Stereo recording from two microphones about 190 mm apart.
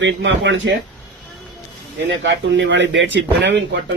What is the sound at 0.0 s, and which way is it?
Speech, 75° right (ahead or behind).